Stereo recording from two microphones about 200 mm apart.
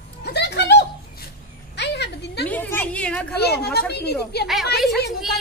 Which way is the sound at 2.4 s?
10° left (ahead or behind).